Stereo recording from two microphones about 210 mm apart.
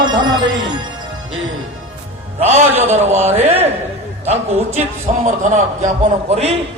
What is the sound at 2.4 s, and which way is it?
A man's voice, 30° right (ahead or behind).